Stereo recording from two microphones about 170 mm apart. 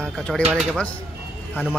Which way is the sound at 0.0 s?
5° left (ahead or behind).